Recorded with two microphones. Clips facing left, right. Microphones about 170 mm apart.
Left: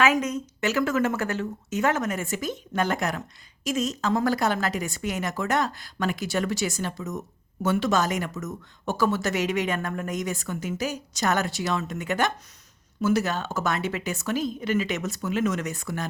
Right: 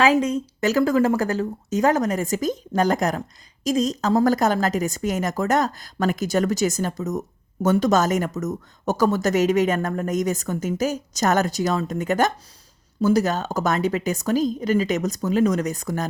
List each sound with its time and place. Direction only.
0.0 s a woman's voice: 30° right (ahead or behind)